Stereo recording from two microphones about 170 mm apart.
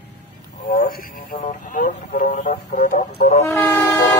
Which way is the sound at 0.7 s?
60° left (ahead or behind).